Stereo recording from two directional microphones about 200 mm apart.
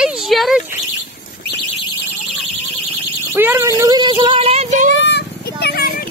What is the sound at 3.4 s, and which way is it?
Speech, 10° right (ahead or behind).